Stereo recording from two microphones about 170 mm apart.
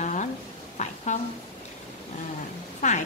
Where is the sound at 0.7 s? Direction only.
45° left (ahead or behind).